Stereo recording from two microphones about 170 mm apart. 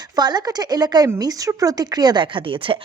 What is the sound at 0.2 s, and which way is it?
Speech, 25° right (ahead or behind).